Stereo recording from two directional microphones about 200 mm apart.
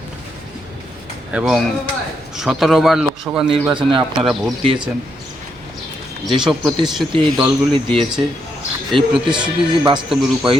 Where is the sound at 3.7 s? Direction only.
25° right (ahead or behind).